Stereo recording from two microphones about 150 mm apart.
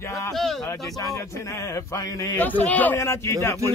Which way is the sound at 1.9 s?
20° left (ahead or behind).